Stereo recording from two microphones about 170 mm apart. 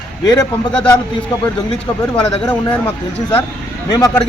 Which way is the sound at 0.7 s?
5° left (ahead or behind).